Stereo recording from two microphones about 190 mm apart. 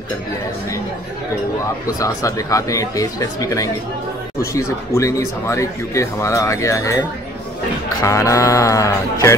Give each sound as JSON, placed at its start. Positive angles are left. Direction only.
{"t": 2.0, "sound": "speech", "side_deg": 15}